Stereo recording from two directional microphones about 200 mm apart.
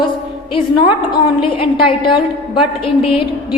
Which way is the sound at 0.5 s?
25° left (ahead or behind).